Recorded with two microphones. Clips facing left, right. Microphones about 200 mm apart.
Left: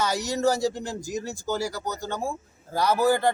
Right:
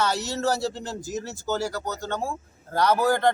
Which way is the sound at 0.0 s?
10° left (ahead or behind).